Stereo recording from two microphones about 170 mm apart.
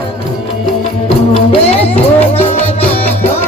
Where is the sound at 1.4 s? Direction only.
35° left (ahead or behind).